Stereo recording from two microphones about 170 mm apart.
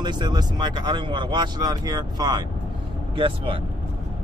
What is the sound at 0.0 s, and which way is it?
Speech, 25° right (ahead or behind).